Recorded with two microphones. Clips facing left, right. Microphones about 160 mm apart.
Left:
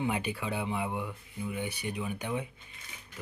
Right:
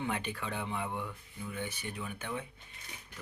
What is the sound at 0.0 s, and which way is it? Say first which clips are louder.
Speech: left 4 dB; 10° left (ahead or behind).